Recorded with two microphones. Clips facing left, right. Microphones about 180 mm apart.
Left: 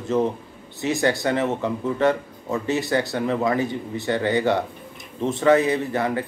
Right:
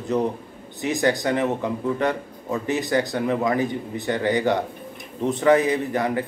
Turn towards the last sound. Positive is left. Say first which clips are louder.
# even
turn(degrees=-15)  # may be behind; listen again after turning